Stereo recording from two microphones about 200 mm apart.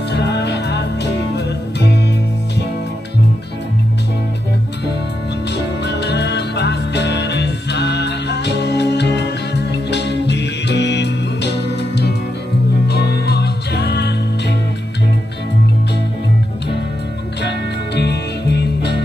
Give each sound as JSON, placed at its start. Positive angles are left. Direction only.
{"t": 0.1, "sound": "music", "side_deg": 60}
{"t": 5.5, "sound": "music", "side_deg": 55}
{"t": 17.4, "sound": "music", "side_deg": 55}